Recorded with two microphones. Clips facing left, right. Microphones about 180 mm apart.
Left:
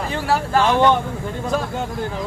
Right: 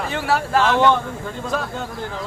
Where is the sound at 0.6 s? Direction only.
15° left (ahead or behind).